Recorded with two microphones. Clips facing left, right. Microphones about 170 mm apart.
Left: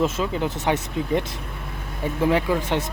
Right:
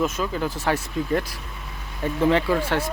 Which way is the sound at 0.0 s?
25° left (ahead or behind).